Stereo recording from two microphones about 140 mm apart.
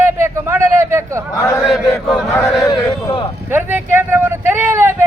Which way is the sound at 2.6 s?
25° left (ahead or behind).